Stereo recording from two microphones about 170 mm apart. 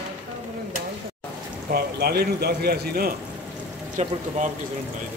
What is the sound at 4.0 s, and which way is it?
Speech, 40° right (ahead or behind).